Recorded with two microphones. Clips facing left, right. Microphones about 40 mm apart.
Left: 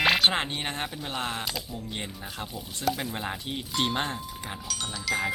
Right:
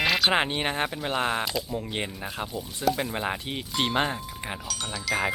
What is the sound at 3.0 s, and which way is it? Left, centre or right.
Speech, centre.